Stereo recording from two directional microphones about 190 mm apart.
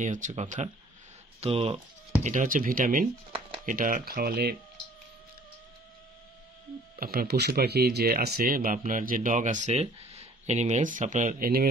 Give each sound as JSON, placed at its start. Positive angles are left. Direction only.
{"t": 0.0, "sound": "speech", "side_deg": -40}
{"t": 2.2, "sound": "speech", "side_deg": -45}
{"t": 7.0, "sound": "speech", "side_deg": -50}